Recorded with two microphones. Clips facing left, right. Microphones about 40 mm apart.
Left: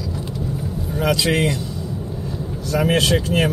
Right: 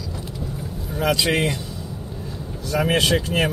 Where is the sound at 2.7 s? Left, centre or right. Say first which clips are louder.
Left 1 dB; centre.